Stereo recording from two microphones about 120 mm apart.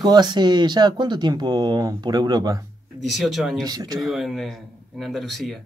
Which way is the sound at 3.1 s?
Centre (ahead or behind).